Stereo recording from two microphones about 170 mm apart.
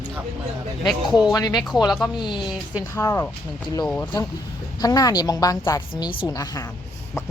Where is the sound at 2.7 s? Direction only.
15° left (ahead or behind).